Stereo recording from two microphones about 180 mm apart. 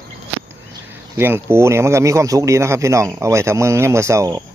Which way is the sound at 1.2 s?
10° right (ahead or behind).